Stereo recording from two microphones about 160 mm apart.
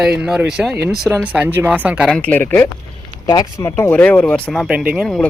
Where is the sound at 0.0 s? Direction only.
5° right (ahead or behind).